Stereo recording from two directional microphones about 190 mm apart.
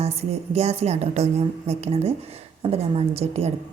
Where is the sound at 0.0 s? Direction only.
35° right (ahead or behind).